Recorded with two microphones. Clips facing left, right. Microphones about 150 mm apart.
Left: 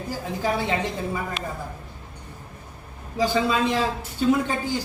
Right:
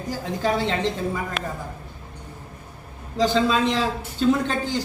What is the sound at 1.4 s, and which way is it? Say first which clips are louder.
Speech: right 2 dB; 50° right (ahead or behind).